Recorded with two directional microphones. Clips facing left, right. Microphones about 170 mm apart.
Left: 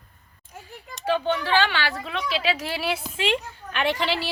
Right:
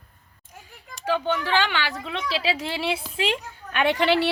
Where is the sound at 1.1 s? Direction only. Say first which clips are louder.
Left 1 dB; 15° right (ahead or behind).